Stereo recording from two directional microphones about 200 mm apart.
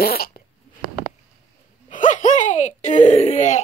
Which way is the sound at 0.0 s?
50° left (ahead or behind).